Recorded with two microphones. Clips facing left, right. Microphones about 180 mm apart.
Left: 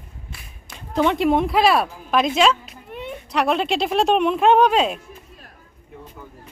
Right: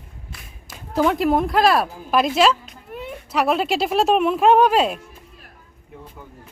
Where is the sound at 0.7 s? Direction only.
5° right (ahead or behind).